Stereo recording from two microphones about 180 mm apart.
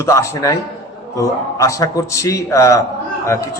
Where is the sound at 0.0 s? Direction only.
15° left (ahead or behind).